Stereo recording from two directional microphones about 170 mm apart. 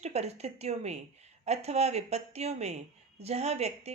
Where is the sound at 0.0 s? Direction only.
40° right (ahead or behind).